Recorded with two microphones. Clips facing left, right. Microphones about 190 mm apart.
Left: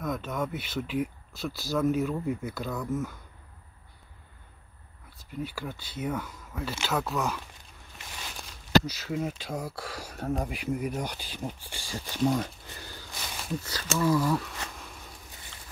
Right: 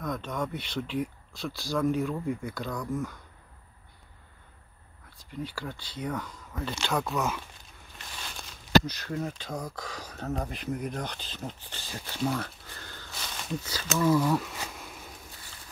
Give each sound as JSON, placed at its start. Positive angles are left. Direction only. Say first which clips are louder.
{"t": 0.0, "sound": "speech", "louder": "left 1 dB", "side_deg": 5}
{"t": 5.1, "sound": "speech", "louder": "left 1 dB", "side_deg": 5}